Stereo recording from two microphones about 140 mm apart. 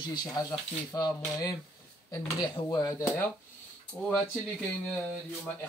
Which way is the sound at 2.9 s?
20° left (ahead or behind).